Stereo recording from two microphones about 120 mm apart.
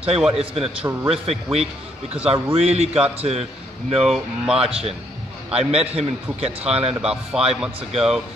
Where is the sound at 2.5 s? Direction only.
60° right (ahead or behind).